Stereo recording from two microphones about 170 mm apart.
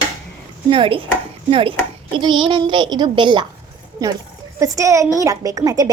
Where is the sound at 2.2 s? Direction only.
25° right (ahead or behind).